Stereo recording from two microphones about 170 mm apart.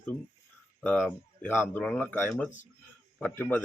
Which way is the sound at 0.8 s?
10° left (ahead or behind).